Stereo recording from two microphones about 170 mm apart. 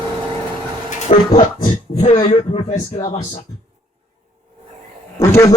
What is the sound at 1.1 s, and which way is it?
A man's voice, 40° left (ahead or behind).